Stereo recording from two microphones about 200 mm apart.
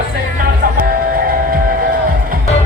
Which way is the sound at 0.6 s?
45° right (ahead or behind).